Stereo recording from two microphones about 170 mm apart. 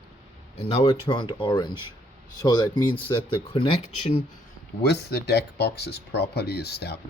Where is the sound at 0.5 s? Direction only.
30° left (ahead or behind).